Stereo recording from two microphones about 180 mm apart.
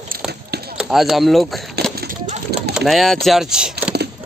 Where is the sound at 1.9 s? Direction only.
50° right (ahead or behind).